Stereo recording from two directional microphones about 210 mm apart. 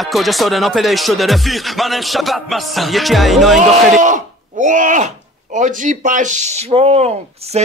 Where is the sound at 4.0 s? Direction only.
35° right (ahead or behind).